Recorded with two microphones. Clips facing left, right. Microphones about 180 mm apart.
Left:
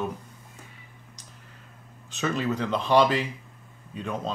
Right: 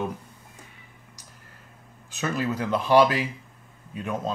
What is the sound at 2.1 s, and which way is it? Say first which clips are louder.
Speech: even; 5° right (ahead or behind).